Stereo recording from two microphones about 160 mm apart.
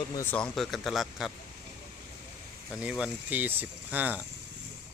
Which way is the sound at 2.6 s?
5° right (ahead or behind).